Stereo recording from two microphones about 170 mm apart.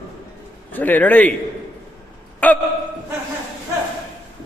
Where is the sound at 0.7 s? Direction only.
10° left (ahead or behind).